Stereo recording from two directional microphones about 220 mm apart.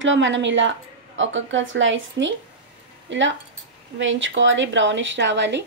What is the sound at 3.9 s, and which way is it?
Speech, 60° right (ahead or behind).